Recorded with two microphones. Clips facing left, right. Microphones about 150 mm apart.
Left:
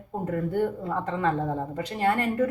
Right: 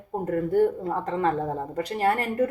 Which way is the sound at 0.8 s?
40° right (ahead or behind).